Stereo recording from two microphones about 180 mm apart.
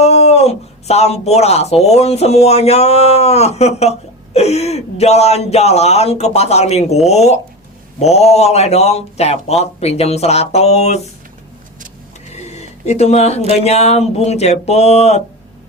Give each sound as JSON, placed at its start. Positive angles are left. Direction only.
{"t": 0.0, "sound": "speech", "side_deg": 35}
{"t": 12.3, "sound": "speech", "side_deg": 40}